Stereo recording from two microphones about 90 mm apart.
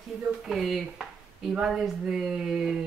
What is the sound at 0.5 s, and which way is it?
A woman's voice, centre (ahead or behind).